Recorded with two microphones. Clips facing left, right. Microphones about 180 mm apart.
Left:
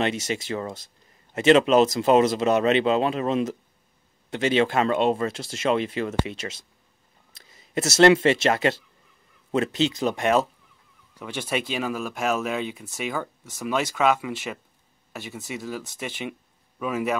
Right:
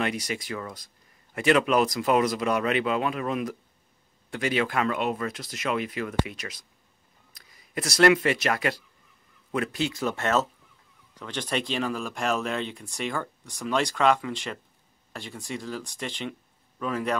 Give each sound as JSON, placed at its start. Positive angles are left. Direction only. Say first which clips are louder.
{"t": 0.0, "sound": "a man's voice", "louder": "left 4 dB", "side_deg": 25}